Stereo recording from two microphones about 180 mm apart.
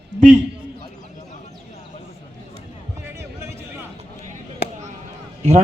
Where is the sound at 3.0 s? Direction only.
15° right (ahead or behind).